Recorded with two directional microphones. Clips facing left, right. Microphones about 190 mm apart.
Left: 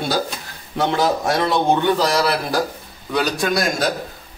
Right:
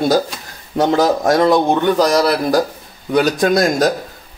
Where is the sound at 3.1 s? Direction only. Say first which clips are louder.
Right 6 dB; 45° right (ahead or behind).